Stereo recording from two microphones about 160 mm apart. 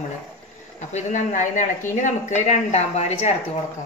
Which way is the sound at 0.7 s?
45° left (ahead or behind).